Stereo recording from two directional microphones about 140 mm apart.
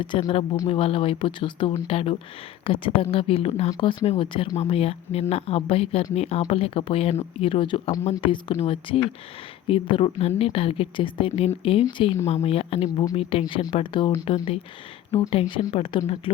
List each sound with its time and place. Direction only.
0.0 s a woman's voice: 40° left (ahead or behind)